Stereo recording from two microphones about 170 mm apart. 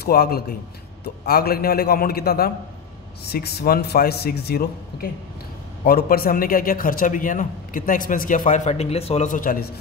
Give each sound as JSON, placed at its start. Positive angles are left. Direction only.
{"t": 0.0, "sound": "a man's voice", "side_deg": 65}
{"t": 5.9, "sound": "a man's voice", "side_deg": 60}